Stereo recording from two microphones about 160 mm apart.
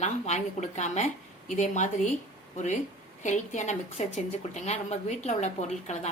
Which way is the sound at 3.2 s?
50° left (ahead or behind).